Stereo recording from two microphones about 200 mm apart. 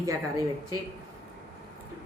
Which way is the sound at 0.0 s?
15° right (ahead or behind).